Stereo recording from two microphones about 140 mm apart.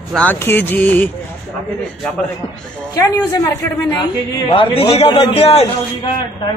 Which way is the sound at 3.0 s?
20° left (ahead or behind).